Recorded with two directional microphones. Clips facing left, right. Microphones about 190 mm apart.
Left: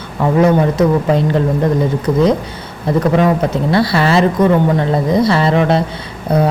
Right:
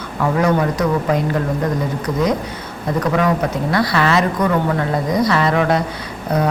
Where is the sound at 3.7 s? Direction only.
30° left (ahead or behind).